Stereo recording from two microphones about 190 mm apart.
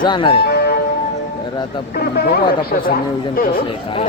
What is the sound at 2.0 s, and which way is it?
Speech, 55° left (ahead or behind).